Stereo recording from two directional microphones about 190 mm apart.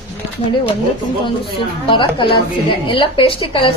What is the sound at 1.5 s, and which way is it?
A woman's voice, 25° left (ahead or behind).